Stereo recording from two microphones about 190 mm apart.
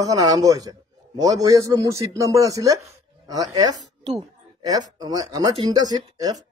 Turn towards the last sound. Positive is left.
turn(degrees=-20)  # may be behind; listen again after turning